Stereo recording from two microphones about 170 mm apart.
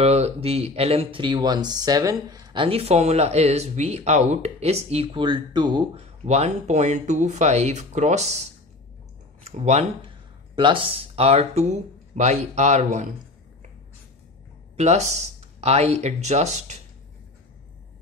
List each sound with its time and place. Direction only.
0.0 s speech: 40° right (ahead or behind)
6.2 s speech: 40° right (ahead or behind)
9.4 s speech: 40° right (ahead or behind)
10.5 s speech: 30° right (ahead or behind)
14.8 s speech: 40° right (ahead or behind)